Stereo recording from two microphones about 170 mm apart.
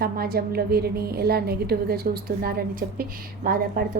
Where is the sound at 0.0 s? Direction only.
65° right (ahead or behind).